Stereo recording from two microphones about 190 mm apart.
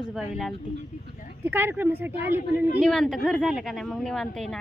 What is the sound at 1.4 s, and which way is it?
Speech, 10° right (ahead or behind).